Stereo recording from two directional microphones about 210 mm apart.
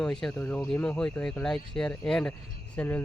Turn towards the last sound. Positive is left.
turn(degrees=10)  # may be behind; listen again after turning